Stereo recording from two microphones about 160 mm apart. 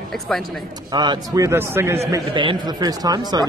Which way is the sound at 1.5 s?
15° right (ahead or behind).